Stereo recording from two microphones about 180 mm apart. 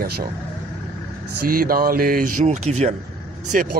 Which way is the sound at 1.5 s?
55° right (ahead or behind).